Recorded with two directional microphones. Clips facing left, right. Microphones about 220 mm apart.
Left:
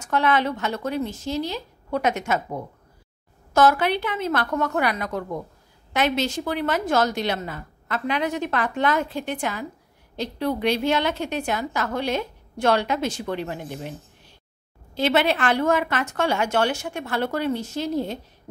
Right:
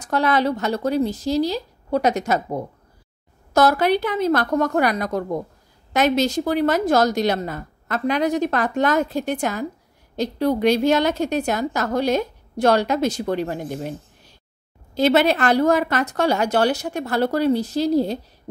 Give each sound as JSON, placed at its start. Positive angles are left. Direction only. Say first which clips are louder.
{"t": 0.0, "sound": "a woman's voice", "louder": "right 2 dB", "side_deg": -35}
{"t": 15.0, "sound": "a woman's voice", "louder": "right 4 dB", "side_deg": -40}